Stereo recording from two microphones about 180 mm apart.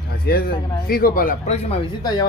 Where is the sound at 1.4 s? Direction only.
35° left (ahead or behind).